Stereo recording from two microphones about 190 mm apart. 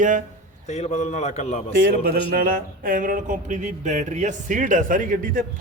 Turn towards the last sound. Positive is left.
turn(degrees=-45)  # may be behind; listen again after turning